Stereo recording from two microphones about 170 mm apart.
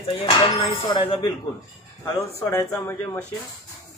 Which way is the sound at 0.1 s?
30° left (ahead or behind).